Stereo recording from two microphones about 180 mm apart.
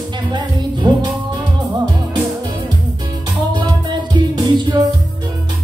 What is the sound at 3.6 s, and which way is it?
Music, 25° right (ahead or behind).